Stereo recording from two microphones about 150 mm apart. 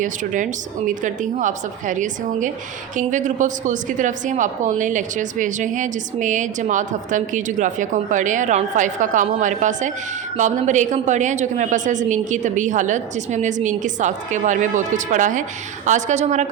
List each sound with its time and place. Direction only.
1.0 s a woman's voice: 55° right (ahead or behind)